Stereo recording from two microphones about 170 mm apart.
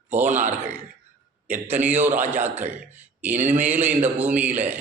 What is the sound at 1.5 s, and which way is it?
A man's voice, 10° right (ahead or behind).